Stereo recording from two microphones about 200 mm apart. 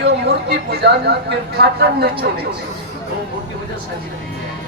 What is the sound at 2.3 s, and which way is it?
Speech, 55° right (ahead or behind).